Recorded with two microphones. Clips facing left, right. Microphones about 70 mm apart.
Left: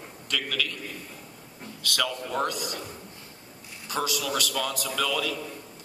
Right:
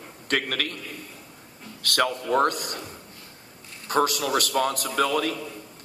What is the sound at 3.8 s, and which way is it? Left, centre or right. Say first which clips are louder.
Speech: right 6 dB; right.